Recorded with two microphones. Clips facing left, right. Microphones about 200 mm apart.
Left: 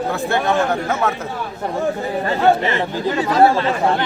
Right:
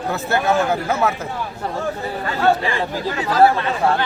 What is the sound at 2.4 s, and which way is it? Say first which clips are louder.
Speech: left 1 dB; 20° left (ahead or behind).